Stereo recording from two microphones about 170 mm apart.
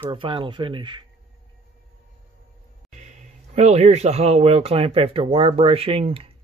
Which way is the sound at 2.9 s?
45° right (ahead or behind).